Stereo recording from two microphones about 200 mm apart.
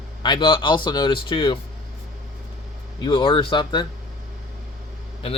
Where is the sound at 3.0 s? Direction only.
25° left (ahead or behind).